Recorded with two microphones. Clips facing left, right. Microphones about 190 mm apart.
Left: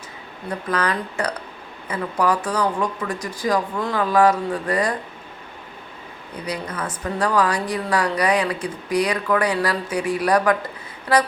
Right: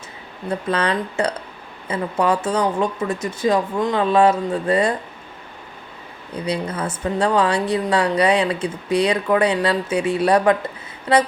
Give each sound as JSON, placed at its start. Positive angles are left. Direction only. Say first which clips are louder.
{"t": 0.7, "sound": "a woman's voice", "louder": "right 2 dB", "side_deg": -25}
{"t": 6.4, "sound": "a woman's voice", "louder": "right 4 dB", "side_deg": -25}